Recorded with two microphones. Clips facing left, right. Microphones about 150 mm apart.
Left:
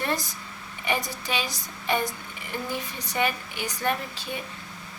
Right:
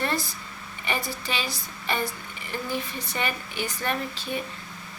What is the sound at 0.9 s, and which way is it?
A woman's voice, 15° left (ahead or behind).